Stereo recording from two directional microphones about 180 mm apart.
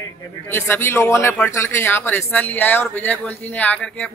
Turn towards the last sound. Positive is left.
turn(degrees=5)  # may be behind; listen again after turning